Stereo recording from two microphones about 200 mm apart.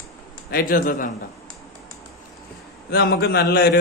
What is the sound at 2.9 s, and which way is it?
Speech, 55° left (ahead or behind).